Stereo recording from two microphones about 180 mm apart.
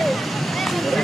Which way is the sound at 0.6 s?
Centre (ahead or behind).